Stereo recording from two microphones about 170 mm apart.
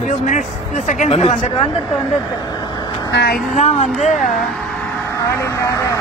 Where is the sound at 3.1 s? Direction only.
80° left.